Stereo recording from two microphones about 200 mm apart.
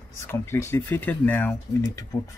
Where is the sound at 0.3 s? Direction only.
10° left (ahead or behind).